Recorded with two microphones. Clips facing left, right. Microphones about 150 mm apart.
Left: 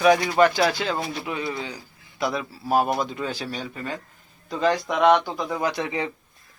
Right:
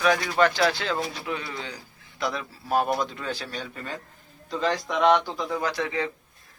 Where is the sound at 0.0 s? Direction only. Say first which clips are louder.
Left 4 dB; 15° left (ahead or behind).